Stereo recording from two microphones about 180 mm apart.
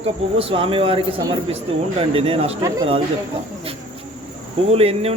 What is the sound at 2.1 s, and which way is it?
Speech, 30° right (ahead or behind).